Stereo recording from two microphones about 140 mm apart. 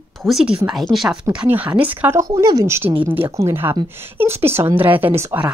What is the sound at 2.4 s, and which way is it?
Speech, 25° right (ahead or behind).